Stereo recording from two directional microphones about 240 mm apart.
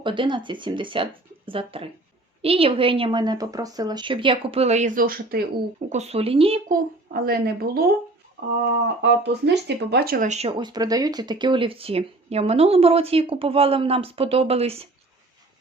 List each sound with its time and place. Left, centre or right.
0.0 s speech: centre; by 5.4 s right
5.9 s speech: right
7.1 s a woman's voice: right
9.0 s speech: right